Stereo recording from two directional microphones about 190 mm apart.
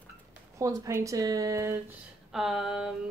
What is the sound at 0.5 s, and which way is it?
Speech, 15° right (ahead or behind).